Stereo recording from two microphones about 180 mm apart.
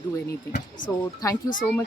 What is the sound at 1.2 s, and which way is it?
Speech, 20° left (ahead or behind).